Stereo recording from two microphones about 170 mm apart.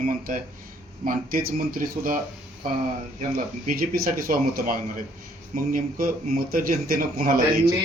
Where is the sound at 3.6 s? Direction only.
60° right (ahead or behind).